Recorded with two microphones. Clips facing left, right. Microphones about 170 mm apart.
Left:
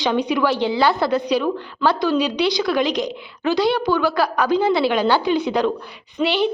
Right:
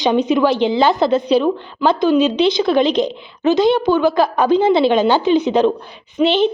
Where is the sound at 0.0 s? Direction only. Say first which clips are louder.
Right 5 dB; 20° right (ahead or behind).